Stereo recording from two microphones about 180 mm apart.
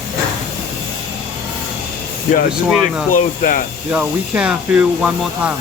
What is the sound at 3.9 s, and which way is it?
Speech, 5° right (ahead or behind).